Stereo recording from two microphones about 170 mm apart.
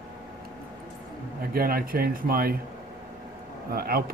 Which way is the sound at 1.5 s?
60° right (ahead or behind).